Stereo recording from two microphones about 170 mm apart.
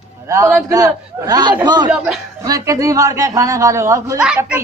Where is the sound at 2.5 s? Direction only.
20° right (ahead or behind).